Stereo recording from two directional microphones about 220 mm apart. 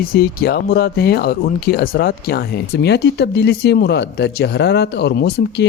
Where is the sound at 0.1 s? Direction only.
45° left (ahead or behind).